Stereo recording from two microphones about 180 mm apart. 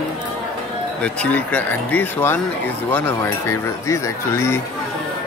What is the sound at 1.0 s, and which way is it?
Speech, 10° left (ahead or behind).